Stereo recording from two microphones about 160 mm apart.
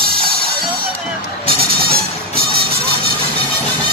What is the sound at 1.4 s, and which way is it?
Music, 70° right (ahead or behind).